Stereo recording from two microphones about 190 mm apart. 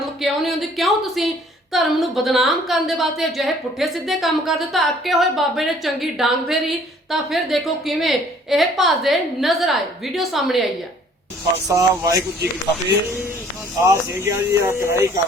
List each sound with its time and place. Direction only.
0.2 s a sound: centre (ahead or behind)
1.7 s a woman's voice: centre (ahead or behind)
11.7 s speech: 15° right (ahead or behind)
13.8 s speech: 15° right (ahead or behind)